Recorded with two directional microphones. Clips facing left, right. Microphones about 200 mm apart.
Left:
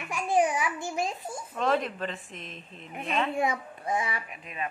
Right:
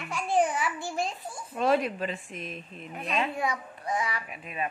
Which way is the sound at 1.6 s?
10° right (ahead or behind).